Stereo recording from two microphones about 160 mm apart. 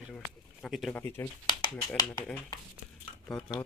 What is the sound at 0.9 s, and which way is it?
Speech, 15° left (ahead or behind).